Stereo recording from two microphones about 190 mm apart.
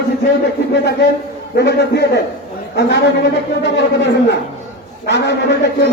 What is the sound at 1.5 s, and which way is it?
A man's voice, 60° left (ahead or behind).